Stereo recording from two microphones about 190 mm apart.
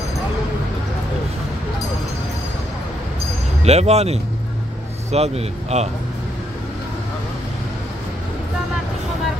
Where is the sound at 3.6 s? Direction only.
35° right (ahead or behind).